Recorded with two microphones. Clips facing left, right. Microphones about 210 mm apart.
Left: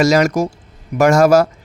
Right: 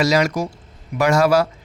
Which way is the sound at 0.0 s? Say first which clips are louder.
Left 5 dB; 45° left (ahead or behind).